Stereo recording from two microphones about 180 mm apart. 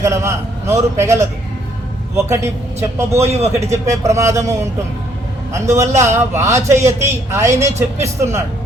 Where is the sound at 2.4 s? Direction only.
15° right (ahead or behind).